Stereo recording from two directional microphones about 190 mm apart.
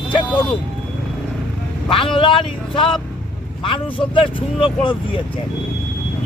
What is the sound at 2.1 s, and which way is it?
Speech, 25° left (ahead or behind).